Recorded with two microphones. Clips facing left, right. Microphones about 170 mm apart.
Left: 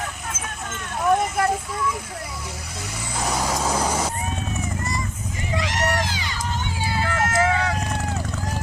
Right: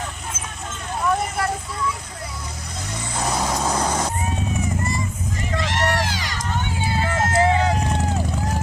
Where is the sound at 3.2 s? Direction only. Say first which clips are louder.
Right 1 dB; centre (ahead or behind).